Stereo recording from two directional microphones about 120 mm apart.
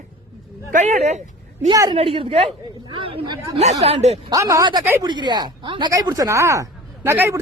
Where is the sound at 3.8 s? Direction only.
60° right (ahead or behind).